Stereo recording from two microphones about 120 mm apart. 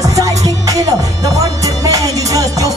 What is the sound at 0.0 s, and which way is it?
Music, 30° right (ahead or behind).